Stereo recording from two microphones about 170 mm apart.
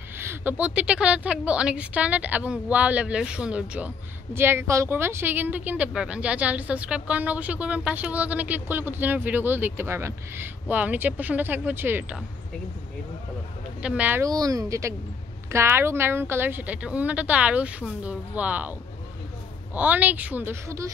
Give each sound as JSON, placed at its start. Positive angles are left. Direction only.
{"t": 0.2, "sound": "a woman's voice", "side_deg": -15}
{"t": 13.8, "sound": "a woman's voice", "side_deg": -10}